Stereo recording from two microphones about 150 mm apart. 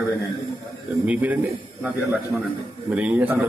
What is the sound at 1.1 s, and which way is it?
A man's voice, 10° right (ahead or behind).